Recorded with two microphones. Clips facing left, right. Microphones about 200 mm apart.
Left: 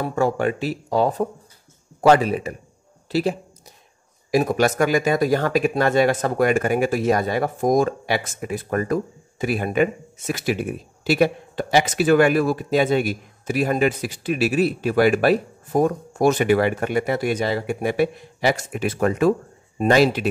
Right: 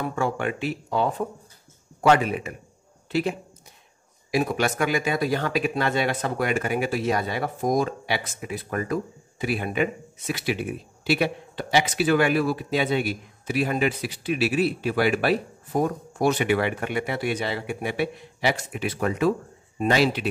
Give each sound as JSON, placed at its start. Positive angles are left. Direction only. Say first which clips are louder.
{"t": 0.0, "sound": "speech", "louder": "left 5 dB", "side_deg": 40}